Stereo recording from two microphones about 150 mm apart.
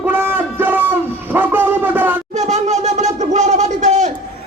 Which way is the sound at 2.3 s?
50° right (ahead or behind).